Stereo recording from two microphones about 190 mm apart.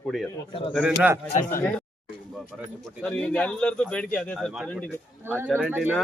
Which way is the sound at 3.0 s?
5° left (ahead or behind).